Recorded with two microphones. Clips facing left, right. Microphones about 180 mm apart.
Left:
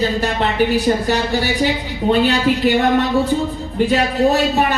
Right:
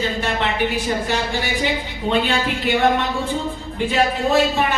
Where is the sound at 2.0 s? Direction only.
40° left (ahead or behind).